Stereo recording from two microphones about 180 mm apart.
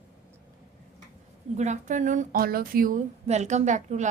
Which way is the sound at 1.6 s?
40° right (ahead or behind).